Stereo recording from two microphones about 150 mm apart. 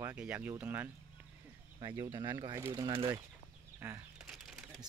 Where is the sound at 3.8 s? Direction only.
15° right (ahead or behind).